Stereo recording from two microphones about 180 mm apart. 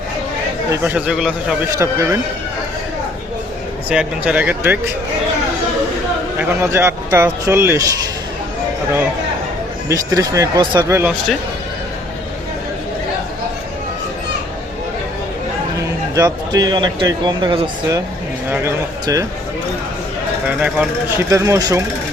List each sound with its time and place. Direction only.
0.7 s a man's voice: 10° right (ahead or behind)
1.8 s speech: 15° right (ahead or behind)
3.8 s speech: 5° right (ahead or behind)
6.4 s speech: 15° right (ahead or behind)
9.9 s speech: 20° right (ahead or behind)
16.1 s a man's voice: 20° right (ahead or behind)
18.4 s speech: 10° right (ahead or behind)
20.6 s speech: 5° right (ahead or behind)